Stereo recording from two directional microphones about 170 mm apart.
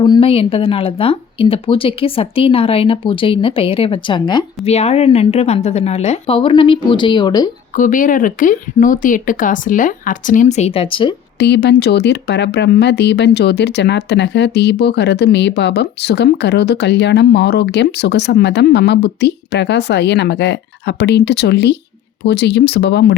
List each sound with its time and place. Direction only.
0.0 s speech: 30° left (ahead or behind)
4.6 s speech: 40° left (ahead or behind)
7.8 s speech: 50° left (ahead or behind); by 11.1 s 30° left (ahead or behind)
11.3 s speech: 80° left